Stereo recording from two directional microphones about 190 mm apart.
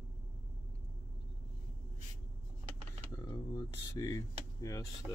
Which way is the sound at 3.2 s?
20° left (ahead or behind).